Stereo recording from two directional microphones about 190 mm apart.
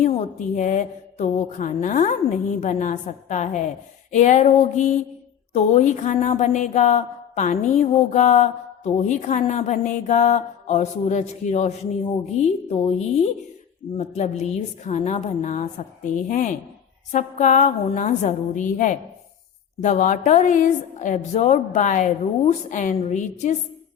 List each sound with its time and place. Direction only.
0.1 s a woman's voice: 40° left (ahead or behind)